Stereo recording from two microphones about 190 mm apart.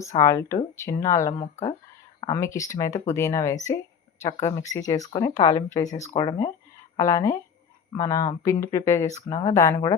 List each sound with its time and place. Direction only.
0.2 s a woman's voice: 15° left (ahead or behind)